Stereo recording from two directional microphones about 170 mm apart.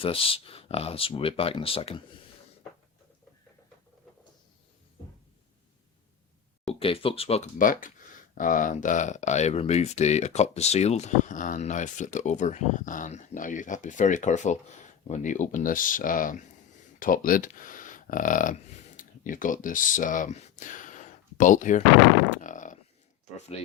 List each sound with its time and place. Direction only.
0.0 s speech: 35° left (ahead or behind)
6.7 s speech: 35° left (ahead or behind)
7.6 s speech: 55° left (ahead or behind)
22.3 s a sound: 50° left (ahead or behind)